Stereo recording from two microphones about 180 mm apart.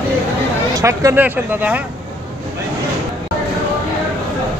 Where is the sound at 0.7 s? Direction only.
15° right (ahead or behind).